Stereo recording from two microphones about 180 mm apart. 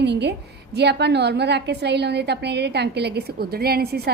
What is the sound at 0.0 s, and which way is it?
A woman's voice, 70° right (ahead or behind).